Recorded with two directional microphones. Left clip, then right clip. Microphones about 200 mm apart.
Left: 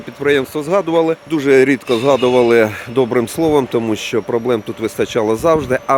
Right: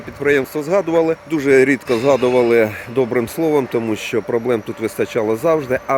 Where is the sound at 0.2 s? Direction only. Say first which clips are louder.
Left 1 dB; 5° left (ahead or behind).